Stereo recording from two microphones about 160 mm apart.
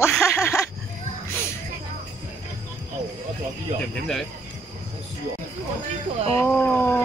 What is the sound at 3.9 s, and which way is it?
Speech, 5° left (ahead or behind).